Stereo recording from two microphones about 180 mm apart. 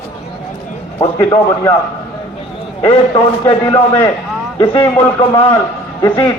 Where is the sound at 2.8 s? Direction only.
25° left (ahead or behind).